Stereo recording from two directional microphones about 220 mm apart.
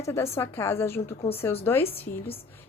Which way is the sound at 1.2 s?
25° left (ahead or behind).